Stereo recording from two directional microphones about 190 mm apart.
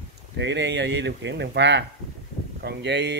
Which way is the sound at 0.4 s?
65° right (ahead or behind).